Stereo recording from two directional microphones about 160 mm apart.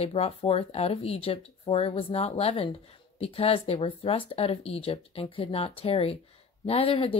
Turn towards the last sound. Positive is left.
turn(degrees=35)  # may be behind; listen again after turning